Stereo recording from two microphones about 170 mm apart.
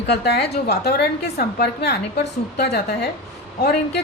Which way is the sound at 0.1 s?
70° left (ahead or behind).